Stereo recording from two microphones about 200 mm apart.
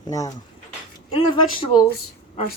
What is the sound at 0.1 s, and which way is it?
Speech, 15° left (ahead or behind).